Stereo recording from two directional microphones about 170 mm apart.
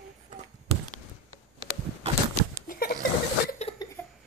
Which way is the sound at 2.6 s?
60° left (ahead or behind).